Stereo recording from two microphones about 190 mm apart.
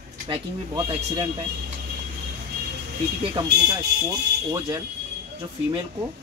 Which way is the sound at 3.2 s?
20° right (ahead or behind).